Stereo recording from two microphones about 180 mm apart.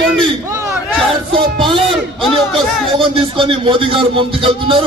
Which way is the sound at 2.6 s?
30° right (ahead or behind).